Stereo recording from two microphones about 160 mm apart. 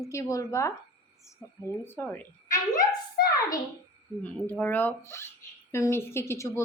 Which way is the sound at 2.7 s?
70° left (ahead or behind).